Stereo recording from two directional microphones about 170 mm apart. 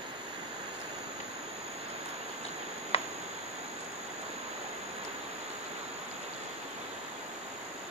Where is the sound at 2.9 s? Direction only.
35° left (ahead or behind).